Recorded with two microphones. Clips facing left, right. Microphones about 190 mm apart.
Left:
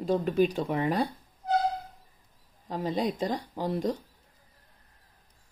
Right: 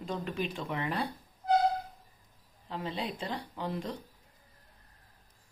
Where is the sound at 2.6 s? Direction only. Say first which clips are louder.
Left 7 dB; 45° left (ahead or behind).